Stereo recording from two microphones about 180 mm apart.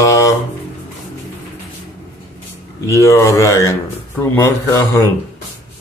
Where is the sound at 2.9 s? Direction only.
15° left (ahead or behind).